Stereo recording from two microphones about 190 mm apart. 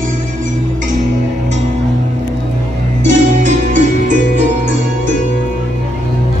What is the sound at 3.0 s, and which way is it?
Music, 40° right (ahead or behind).